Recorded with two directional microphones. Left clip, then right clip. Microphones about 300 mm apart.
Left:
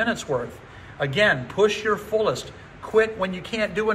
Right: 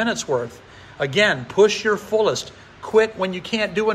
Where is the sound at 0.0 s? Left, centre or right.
Right.